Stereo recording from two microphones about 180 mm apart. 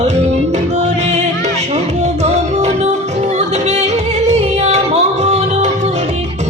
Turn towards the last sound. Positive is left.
turn(degrees=-40)  # may be behind; listen again after turning